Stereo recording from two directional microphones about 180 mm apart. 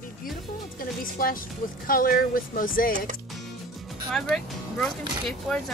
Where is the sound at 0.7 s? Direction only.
50° left (ahead or behind).